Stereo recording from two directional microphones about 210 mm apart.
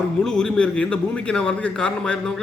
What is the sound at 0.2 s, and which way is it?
A man's voice, 5° left (ahead or behind).